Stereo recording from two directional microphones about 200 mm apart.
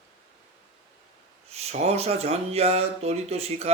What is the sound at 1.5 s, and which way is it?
Speech, 30° right (ahead or behind).